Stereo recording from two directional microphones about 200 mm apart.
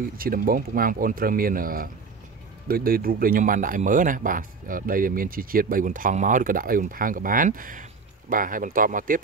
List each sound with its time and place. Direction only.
0.2 s speech: 45° right (ahead or behind)